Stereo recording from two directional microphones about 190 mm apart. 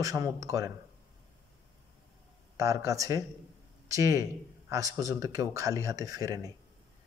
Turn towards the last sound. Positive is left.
turn(degrees=-20)  # may be behind; listen again after turning